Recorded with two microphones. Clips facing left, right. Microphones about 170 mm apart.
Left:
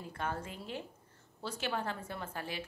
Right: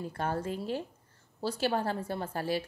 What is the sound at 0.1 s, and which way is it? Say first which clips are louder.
Speech: right 4 dB; 35° right (ahead or behind).